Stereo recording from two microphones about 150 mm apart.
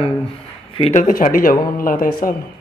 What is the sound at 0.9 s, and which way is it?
Speech, 60° left (ahead or behind).